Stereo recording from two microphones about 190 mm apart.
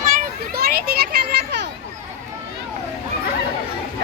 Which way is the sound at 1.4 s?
65° right (ahead or behind).